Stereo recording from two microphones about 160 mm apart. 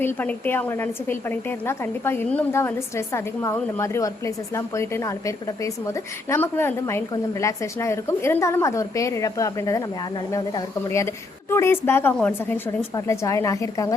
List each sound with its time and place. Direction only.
0.0 s a woman's voice: 10° left (ahead or behind)
13.1 s a woman's voice: 20° left (ahead or behind)